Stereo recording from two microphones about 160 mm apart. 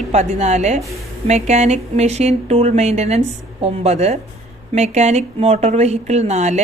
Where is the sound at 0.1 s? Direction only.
45° right (ahead or behind).